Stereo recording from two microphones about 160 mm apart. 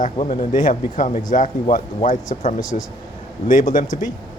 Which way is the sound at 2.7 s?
45° left (ahead or behind).